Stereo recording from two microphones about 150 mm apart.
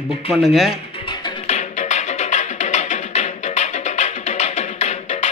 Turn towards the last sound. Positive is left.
turn(degrees=50)  # may be behind; listen again after turning